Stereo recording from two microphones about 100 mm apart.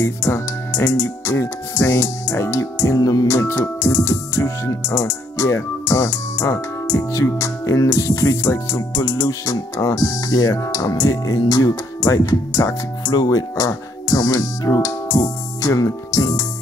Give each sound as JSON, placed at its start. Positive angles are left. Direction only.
{"t": 0.0, "sound": "speech", "side_deg": 35}